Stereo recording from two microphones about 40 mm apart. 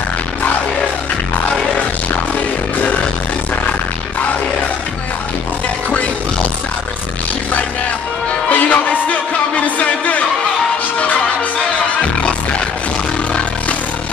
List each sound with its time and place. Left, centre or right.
8.5 s music: left